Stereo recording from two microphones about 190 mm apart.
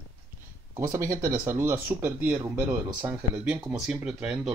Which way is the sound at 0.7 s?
15° right (ahead or behind).